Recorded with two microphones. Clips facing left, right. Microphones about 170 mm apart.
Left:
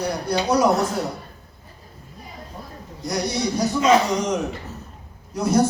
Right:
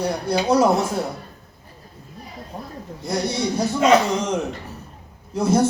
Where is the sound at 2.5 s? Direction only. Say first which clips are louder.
Right 6 dB; 70° right (ahead or behind).